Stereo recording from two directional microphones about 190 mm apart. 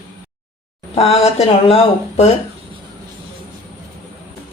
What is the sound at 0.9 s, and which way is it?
Speech, 35° left (ahead or behind).